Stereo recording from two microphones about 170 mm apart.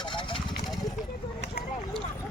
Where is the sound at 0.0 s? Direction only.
30° left (ahead or behind).